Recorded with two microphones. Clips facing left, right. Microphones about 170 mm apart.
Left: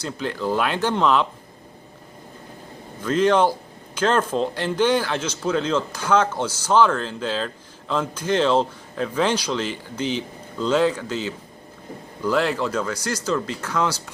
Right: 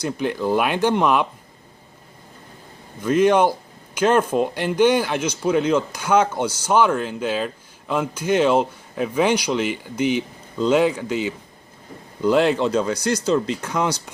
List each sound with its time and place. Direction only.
0.0 s speech: 15° right (ahead or behind)
3.0 s speech: 15° right (ahead or behind)